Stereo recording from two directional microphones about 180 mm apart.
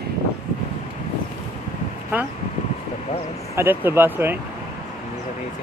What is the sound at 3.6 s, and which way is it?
Speech, 15° right (ahead or behind).